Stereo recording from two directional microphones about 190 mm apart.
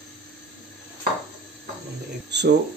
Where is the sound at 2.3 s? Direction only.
65° right (ahead or behind).